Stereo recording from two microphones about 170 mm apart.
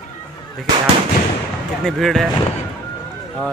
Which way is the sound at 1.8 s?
Centre (ahead or behind).